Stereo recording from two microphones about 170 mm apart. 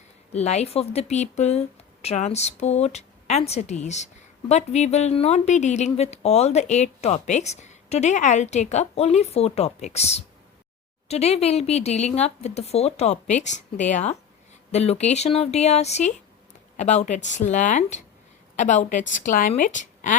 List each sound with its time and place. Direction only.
0.3 s a woman's voice: 40° left (ahead or behind)